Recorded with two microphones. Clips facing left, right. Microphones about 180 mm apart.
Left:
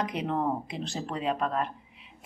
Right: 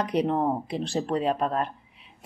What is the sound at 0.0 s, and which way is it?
Speech, 35° right (ahead or behind).